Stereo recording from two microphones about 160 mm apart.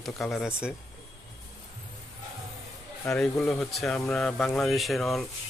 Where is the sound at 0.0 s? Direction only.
Centre (ahead or behind).